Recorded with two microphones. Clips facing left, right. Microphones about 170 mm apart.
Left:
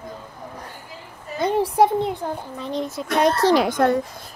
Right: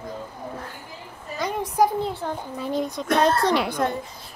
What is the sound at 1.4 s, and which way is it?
Speech, 30° left (ahead or behind).